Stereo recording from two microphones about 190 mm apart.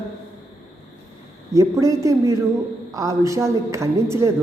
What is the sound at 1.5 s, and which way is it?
A man's voice, 15° right (ahead or behind).